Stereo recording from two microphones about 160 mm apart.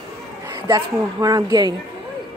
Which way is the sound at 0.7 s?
25° right (ahead or behind).